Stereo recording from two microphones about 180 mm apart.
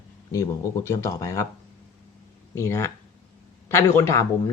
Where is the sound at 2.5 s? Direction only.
15° left (ahead or behind).